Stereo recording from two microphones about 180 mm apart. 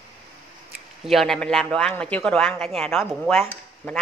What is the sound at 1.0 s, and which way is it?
A woman's voice, centre (ahead or behind).